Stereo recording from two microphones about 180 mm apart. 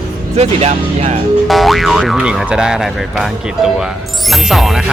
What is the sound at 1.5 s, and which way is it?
Speech, centre (ahead or behind).